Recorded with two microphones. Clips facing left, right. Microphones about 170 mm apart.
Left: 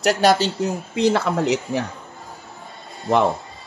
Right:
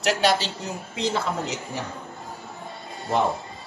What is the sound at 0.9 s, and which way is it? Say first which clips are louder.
Speech: left 6 dB; 60° left (ahead or behind).